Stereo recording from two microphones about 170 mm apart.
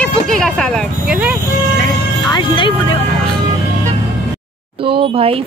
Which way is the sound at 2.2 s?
25° left (ahead or behind).